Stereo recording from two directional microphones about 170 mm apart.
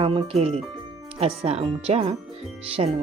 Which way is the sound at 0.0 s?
30° right (ahead or behind).